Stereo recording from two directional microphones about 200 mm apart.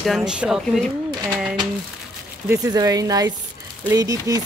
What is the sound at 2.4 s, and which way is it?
Speech, 15° right (ahead or behind).